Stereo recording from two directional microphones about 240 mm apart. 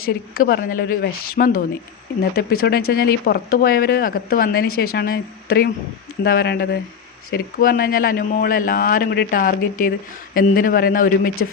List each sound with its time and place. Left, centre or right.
0.0 s speech: left